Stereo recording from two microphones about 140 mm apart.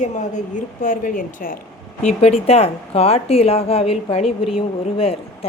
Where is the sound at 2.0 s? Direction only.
50° left (ahead or behind).